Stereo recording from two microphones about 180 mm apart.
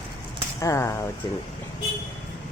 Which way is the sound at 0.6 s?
15° left (ahead or behind).